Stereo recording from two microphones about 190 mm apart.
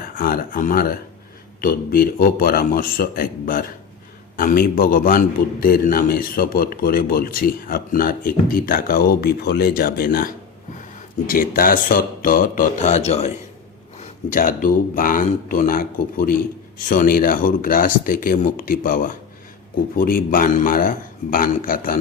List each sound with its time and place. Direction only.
0.0 s a man's voice: 50° left (ahead or behind)
14.0 s a man's voice: 45° left (ahead or behind)